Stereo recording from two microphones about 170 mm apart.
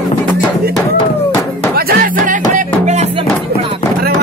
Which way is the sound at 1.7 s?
60° right (ahead or behind).